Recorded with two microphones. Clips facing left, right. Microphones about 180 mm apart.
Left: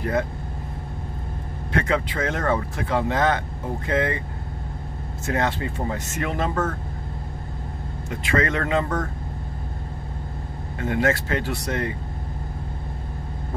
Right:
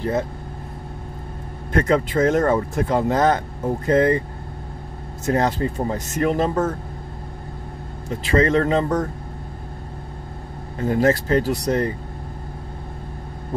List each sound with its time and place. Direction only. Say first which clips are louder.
1.7 s speech: right 5 dB; 45° right (ahead or behind)
5.2 s speech: right 5 dB; 40° right (ahead or behind)
8.1 s speech: right 5 dB; 35° right (ahead or behind)
10.8 s speech: right 4 dB; 35° right (ahead or behind)